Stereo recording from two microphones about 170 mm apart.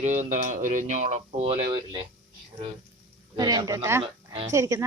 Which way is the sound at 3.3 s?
25° right (ahead or behind).